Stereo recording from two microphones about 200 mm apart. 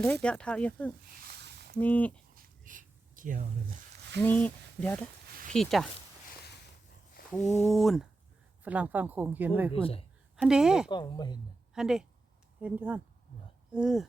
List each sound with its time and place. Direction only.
0.0 s speech: 5° left (ahead or behind)
1.1 s a sound: 55° right (ahead or behind)
1.7 s speech: 10° left (ahead or behind)
2.3 s a sound: 45° right (ahead or behind)
4.2 s speech: 10° left (ahead or behind)
7.4 s speech: 35° left (ahead or behind)
7.7 s speech: centre (ahead or behind)
9.7 s speech: 30° left (ahead or behind)
10.3 s speech: 5° right (ahead or behind)
10.8 s speech: 20° left (ahead or behind)
11.7 s a woman's voice: 5° right (ahead or behind)